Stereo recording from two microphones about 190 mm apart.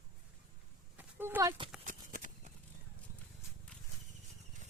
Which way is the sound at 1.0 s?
10° right (ahead or behind).